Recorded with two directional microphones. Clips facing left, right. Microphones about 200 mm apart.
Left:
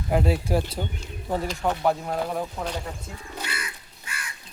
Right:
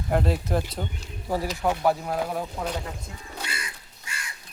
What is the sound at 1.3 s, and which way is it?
Speech, 5° right (ahead or behind).